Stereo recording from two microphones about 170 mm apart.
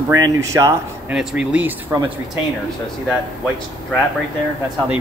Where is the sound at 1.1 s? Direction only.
5° right (ahead or behind).